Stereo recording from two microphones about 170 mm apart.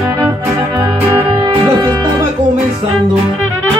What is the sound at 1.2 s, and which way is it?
Music, 30° right (ahead or behind).